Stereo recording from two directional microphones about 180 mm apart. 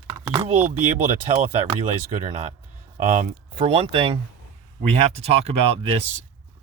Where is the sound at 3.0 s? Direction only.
45° right (ahead or behind).